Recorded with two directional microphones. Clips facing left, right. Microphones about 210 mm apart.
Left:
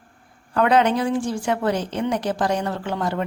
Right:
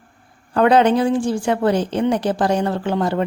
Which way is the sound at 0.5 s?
30° right (ahead or behind).